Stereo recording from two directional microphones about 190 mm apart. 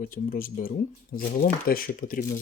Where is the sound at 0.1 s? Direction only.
45° left (ahead or behind).